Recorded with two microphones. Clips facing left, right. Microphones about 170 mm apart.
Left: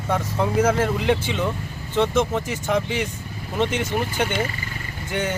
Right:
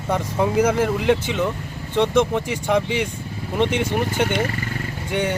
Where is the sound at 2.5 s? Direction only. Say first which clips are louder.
Right 3 dB; 15° right (ahead or behind).